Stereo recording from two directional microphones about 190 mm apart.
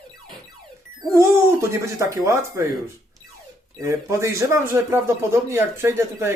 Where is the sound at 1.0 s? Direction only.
15° right (ahead or behind).